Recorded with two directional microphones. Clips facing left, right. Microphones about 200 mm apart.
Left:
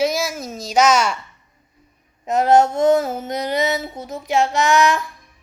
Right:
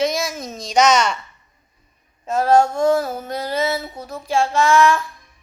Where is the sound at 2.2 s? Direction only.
20° left (ahead or behind).